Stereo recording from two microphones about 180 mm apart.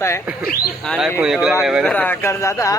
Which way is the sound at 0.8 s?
Centre (ahead or behind).